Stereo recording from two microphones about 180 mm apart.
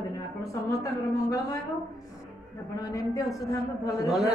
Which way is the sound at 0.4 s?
20° left (ahead or behind).